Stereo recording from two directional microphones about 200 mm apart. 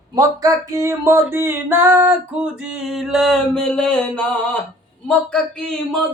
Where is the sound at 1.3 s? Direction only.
10° right (ahead or behind).